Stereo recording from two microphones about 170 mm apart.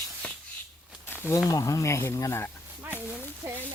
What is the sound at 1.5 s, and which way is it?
Speech, 20° left (ahead or behind).